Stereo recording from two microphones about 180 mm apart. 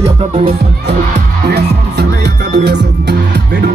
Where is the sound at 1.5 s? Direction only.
65° right (ahead or behind).